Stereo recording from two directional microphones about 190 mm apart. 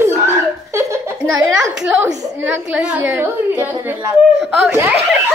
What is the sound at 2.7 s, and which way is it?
A woman's voice, 5° right (ahead or behind).